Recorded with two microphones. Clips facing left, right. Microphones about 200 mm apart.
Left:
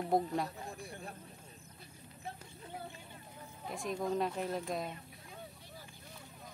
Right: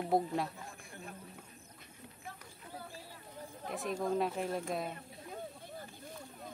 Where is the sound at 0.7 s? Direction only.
35° left (ahead or behind).